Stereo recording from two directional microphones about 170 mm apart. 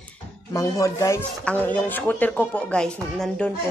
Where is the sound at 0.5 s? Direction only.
20° left (ahead or behind).